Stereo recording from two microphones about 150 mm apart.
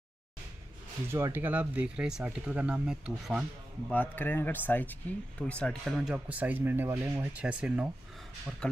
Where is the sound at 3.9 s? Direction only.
10° left (ahead or behind); by 7.8 s 10° right (ahead or behind).